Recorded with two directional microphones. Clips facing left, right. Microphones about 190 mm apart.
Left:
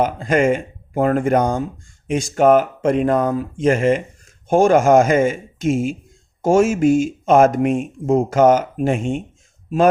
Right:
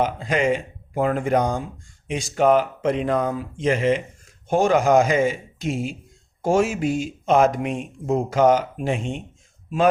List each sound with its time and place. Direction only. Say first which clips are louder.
0.0 s speech: left 5 dB; 50° left (ahead or behind)